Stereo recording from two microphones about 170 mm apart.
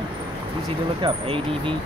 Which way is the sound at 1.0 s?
30° right (ahead or behind).